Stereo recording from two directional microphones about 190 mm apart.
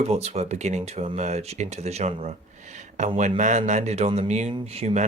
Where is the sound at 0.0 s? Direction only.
35° right (ahead or behind).